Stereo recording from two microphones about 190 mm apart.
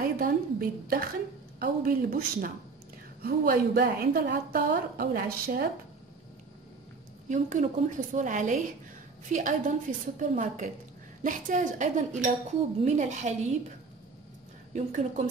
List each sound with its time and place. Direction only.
0.0 s a sound: 50° right (ahead or behind)
1.6 s a woman's voice: 50° right (ahead or behind)
7.2 s a woman's voice: 40° right (ahead or behind)
14.7 s speech: 40° right (ahead or behind)